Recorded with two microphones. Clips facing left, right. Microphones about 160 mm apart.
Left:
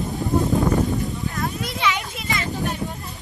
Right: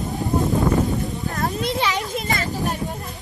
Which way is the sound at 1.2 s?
40° right (ahead or behind).